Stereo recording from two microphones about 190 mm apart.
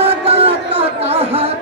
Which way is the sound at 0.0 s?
30° right (ahead or behind).